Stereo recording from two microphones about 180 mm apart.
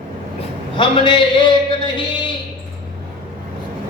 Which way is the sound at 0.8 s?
25° left (ahead or behind).